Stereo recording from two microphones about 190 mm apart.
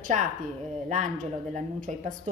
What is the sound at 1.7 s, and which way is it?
Speech, 45° right (ahead or behind).